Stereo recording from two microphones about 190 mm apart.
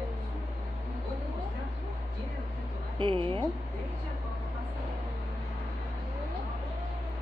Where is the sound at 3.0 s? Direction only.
25° right (ahead or behind).